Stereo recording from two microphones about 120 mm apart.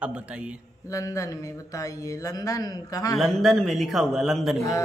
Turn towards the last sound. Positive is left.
turn(degrees=0)  # may be behind; listen again after turning